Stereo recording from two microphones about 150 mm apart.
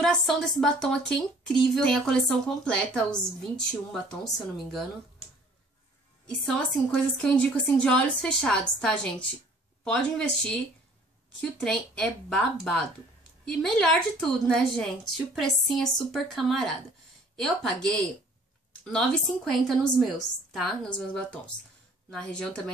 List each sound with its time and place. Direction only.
0.0 s speech: 5° left (ahead or behind)
6.2 s a woman's voice: 5° left (ahead or behind)
11.6 s speech: 5° left (ahead or behind)